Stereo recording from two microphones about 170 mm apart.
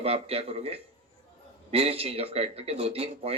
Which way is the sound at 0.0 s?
35° right (ahead or behind).